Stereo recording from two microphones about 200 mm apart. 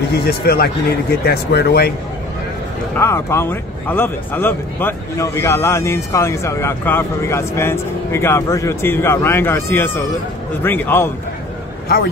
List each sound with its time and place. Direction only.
0.1 s speech: 50° left (ahead or behind)
3.0 s speech: 10° left (ahead or behind)